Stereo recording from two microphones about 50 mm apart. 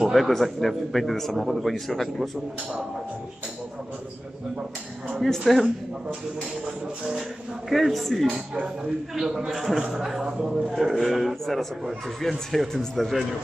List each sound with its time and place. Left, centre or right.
0.1 s a man's voice: centre
1.3 s a man's voice: centre
5.2 s a man's voice: centre
6.6 s music: centre
7.7 s a man's voice: centre